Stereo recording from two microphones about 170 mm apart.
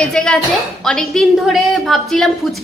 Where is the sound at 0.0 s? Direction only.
5° left (ahead or behind).